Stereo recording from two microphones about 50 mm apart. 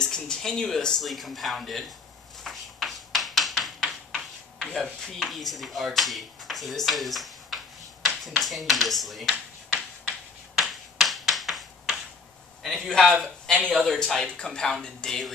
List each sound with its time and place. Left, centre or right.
0.0 s speech: centre
1.0 s speech: centre
2.4 s a sound: centre
4.7 s speech: centre
10.6 s a sound: centre
12.6 s speech: centre
13.2 s a man's voice: centre